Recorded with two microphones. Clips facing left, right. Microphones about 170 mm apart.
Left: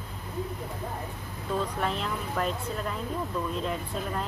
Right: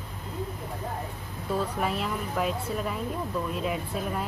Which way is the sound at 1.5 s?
5° right (ahead or behind).